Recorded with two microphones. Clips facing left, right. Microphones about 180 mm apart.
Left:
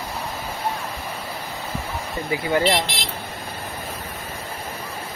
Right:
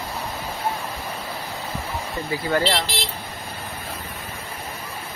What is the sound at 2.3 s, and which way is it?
Speech, 15° left (ahead or behind).